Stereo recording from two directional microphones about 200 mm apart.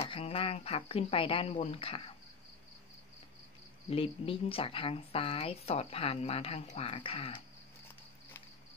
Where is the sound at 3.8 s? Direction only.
30° left (ahead or behind).